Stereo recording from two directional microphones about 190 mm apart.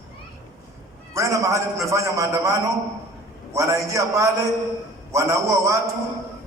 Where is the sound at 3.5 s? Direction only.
15° right (ahead or behind).